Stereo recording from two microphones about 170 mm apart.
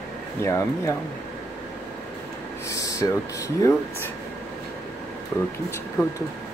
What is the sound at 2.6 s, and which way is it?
Speech, 20° left (ahead or behind).